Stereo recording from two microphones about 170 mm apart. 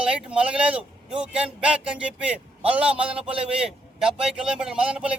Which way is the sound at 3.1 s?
35° right (ahead or behind).